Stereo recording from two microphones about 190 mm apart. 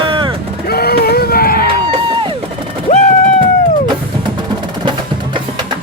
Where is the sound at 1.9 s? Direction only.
25° right (ahead or behind).